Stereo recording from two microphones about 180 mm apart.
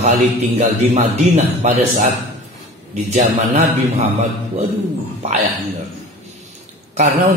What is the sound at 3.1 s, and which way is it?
Speech, 40° right (ahead or behind).